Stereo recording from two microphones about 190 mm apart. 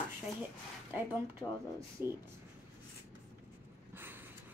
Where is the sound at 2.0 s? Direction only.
10° right (ahead or behind).